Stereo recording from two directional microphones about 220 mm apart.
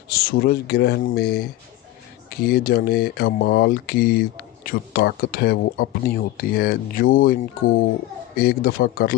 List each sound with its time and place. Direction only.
0.1 s speech: 45° left (ahead or behind)